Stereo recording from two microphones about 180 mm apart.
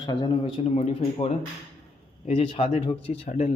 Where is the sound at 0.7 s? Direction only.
35° left (ahead or behind).